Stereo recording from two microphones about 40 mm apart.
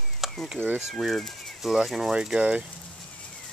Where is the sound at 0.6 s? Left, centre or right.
Right.